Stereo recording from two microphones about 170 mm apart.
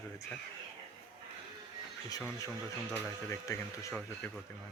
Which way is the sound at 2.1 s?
20° left (ahead or behind).